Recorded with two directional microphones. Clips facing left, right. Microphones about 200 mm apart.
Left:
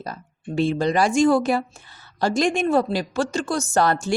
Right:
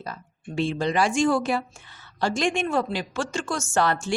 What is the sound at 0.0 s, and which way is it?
A woman's voice, 40° left (ahead or behind).